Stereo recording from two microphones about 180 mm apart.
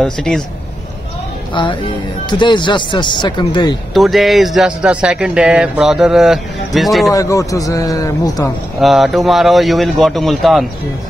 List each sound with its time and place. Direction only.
0.0 s speech: centre (ahead or behind)
1.5 s speech: 25° left (ahead or behind)
3.9 s speech: centre (ahead or behind)
7.2 s speech: 20° left (ahead or behind)
8.8 s speech: centre (ahead or behind)